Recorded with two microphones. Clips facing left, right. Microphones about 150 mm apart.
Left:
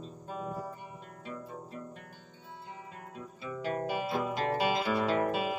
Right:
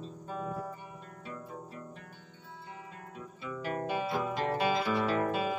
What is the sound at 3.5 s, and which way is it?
Music, 25° left (ahead or behind).